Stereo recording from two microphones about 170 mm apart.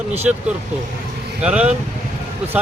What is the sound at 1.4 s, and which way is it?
Speech, 5° right (ahead or behind).